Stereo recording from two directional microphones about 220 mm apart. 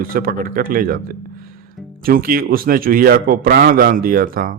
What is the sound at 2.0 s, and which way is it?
A man's voice, 40° right (ahead or behind).